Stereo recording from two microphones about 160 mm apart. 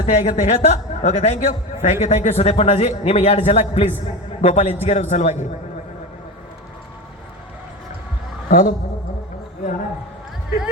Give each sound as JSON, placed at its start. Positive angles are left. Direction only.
{"t": 0.0, "sound": "a man's voice", "side_deg": 45}
{"t": 8.4, "sound": "a man's voice", "side_deg": 55}